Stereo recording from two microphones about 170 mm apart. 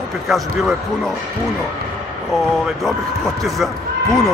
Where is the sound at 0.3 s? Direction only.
Centre (ahead or behind).